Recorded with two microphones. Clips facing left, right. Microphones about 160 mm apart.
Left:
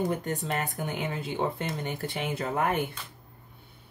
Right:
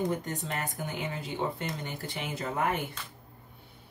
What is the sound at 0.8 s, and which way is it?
Speech, 60° left (ahead or behind).